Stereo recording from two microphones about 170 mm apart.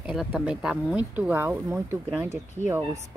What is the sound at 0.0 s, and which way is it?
Speech, 5° right (ahead or behind).